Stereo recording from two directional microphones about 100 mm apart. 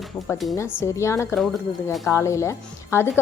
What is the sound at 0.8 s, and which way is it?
Speech, 30° left (ahead or behind).